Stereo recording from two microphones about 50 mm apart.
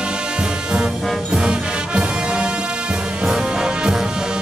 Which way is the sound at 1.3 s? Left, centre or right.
Centre.